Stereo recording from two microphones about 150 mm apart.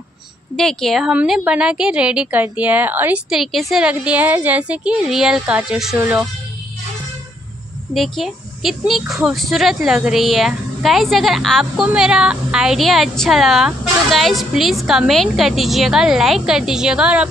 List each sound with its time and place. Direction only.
0.6 s a woman's voice: 5° left (ahead or behind)
7.9 s speech: centre (ahead or behind)